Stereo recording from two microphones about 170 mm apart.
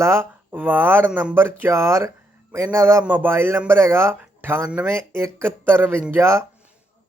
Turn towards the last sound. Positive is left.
turn(degrees=-15)  # may be behind; listen again after turning